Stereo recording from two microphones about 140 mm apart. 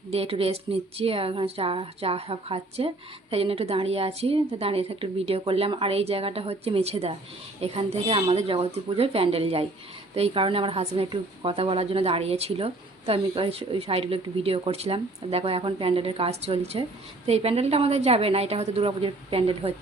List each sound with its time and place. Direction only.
0.1 s speech: 45° right (ahead or behind)